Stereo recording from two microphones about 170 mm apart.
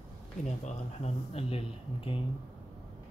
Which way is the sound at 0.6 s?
40° left (ahead or behind).